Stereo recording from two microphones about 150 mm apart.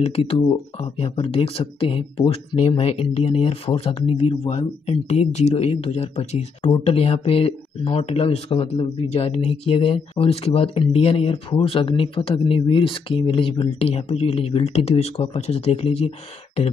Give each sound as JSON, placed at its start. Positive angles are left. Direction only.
{"t": 0.0, "sound": "speech", "side_deg": 40}